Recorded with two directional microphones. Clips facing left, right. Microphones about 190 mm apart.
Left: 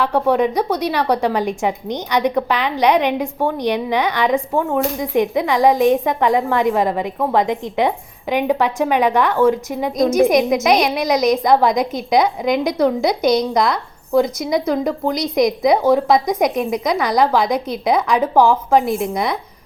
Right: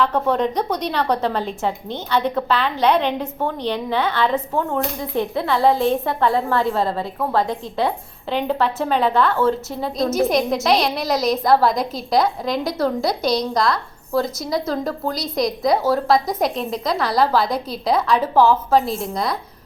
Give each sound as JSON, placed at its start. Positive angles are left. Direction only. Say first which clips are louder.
{"t": 0.0, "sound": "a woman's voice", "louder": "left 3 dB", "side_deg": 10}